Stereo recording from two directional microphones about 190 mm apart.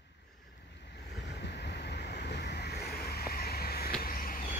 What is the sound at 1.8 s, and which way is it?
Vehicle, 60° left (ahead or behind).